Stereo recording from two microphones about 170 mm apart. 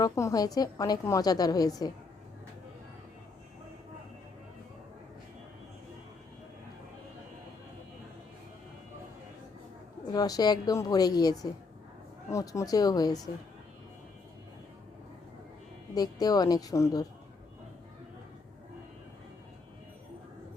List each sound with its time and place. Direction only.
0.0 s a woman's voice: 20° left (ahead or behind)
10.1 s a woman's voice: 20° left (ahead or behind)
16.0 s a woman's voice: 20° left (ahead or behind)